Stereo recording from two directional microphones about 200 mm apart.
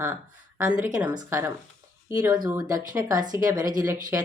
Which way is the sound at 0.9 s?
15° right (ahead or behind).